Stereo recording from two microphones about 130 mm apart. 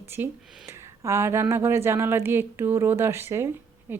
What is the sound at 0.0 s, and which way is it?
Speech, 15° right (ahead or behind).